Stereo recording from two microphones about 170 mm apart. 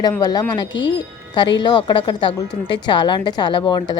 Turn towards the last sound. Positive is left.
turn(degrees=25)  # may be behind; listen again after turning